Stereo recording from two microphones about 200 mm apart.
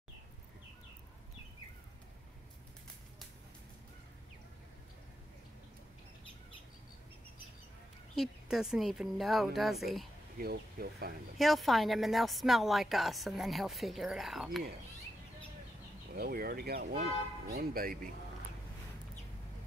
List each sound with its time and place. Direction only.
8.2 s a woman's voice: 5° right (ahead or behind)
10.4 s speech: 50° right (ahead or behind)
11.3 s a woman's voice: centre (ahead or behind)
16.2 s speech: 50° right (ahead or behind)